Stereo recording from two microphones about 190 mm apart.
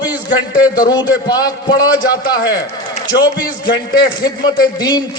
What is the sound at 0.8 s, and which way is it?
A man's voice, 20° left (ahead or behind).